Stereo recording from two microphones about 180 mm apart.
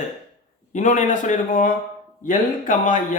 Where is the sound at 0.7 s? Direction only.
45° left (ahead or behind).